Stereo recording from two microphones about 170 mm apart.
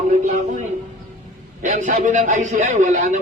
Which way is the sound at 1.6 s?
50° right (ahead or behind).